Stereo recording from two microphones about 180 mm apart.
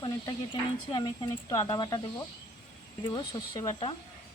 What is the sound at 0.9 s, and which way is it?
Speech, 25° left (ahead or behind).